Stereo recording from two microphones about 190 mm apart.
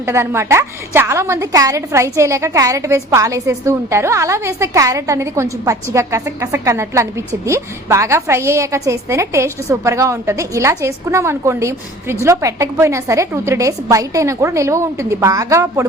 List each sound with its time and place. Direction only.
0.0 s a woman's voice: 15° right (ahead or behind)